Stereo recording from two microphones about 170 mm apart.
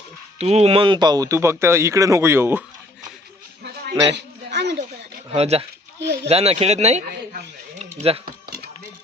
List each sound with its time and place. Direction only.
0.3 s speech: 40° right (ahead or behind); by 2.6 s 15° right (ahead or behind)
3.6 s a sound: 85° right
5.3 s speech: 40° right (ahead or behind)
7.8 s typing: 35° right (ahead or behind)